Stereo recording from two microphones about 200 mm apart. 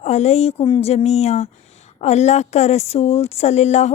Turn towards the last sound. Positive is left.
turn(degrees=35)  # may be behind; listen again after turning